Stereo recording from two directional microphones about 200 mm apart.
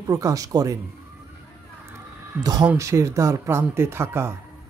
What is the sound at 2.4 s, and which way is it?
Speech, 20° right (ahead or behind).